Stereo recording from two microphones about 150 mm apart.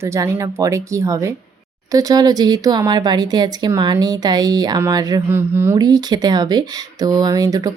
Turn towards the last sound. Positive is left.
turn(degrees=-25)  # may be behind; listen again after turning